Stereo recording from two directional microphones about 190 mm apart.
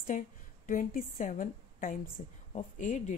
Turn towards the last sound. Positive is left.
turn(degrees=40)  # may be behind; listen again after turning